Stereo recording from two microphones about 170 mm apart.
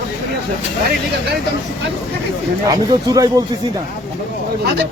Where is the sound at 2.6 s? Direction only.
20° right (ahead or behind).